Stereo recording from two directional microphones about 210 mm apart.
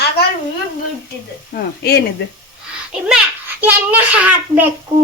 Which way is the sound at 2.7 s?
5° right (ahead or behind).